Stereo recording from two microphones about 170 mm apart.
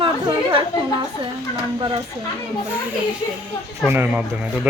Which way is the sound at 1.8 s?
30° right (ahead or behind).